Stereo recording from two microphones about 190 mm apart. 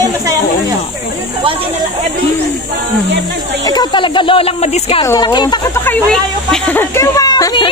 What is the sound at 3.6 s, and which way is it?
Speech, 20° left (ahead or behind).